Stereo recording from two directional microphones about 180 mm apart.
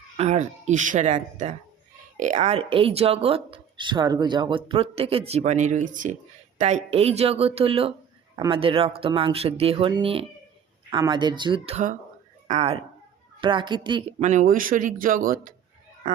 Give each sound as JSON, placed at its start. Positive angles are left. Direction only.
{"t": 0.2, "sound": "speech", "side_deg": -40}
{"t": 14.2, "sound": "speech", "side_deg": -40}